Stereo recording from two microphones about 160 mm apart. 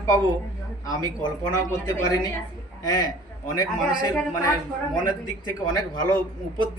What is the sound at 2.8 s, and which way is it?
A man's voice, 25° left (ahead or behind).